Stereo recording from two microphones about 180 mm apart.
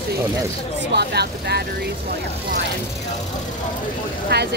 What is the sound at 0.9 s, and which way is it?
Speech, 65° right (ahead or behind).